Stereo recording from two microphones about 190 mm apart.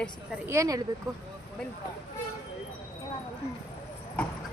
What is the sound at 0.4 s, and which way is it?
Speech, 15° right (ahead or behind).